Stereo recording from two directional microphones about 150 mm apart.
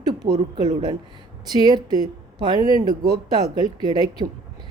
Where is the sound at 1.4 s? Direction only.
30° right (ahead or behind).